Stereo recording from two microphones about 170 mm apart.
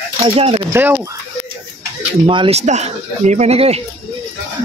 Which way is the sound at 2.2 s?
30° right (ahead or behind).